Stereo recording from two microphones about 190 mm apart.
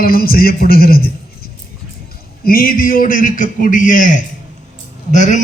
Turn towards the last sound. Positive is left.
turn(degrees=40)  # may be behind; listen again after turning